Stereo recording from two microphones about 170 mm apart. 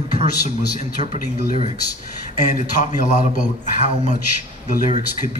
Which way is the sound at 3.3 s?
35° right (ahead or behind).